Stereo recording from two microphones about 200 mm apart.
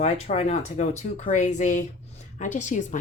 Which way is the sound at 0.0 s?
35° left (ahead or behind).